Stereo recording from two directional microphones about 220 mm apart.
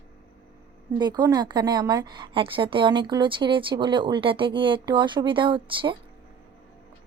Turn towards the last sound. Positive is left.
turn(degrees=-20)  # may be behind; listen again after turning